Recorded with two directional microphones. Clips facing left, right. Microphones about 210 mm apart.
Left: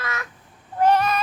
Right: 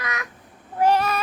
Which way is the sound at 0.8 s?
10° right (ahead or behind).